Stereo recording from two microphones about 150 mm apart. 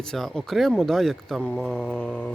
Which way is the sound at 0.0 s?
5° left (ahead or behind).